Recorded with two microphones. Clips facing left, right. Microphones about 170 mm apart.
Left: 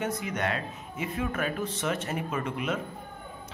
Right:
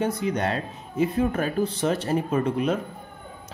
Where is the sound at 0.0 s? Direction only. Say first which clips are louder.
Right 6 dB; 30° right (ahead or behind).